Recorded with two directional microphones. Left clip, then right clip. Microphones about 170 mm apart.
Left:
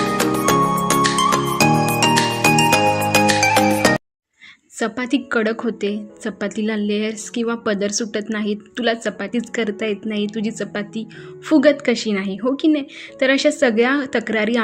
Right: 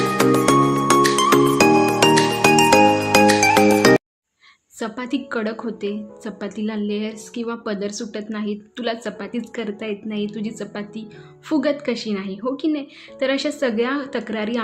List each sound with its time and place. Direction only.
0.5 s music: centre (ahead or behind)
4.8 s a woman's voice: 20° left (ahead or behind)